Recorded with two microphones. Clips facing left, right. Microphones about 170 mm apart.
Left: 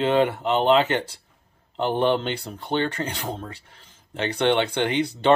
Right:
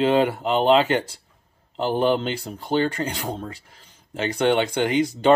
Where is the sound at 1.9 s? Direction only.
35° right (ahead or behind).